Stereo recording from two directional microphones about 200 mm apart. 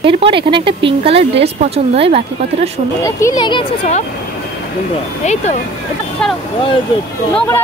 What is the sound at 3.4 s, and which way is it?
Speech, 25° left (ahead or behind).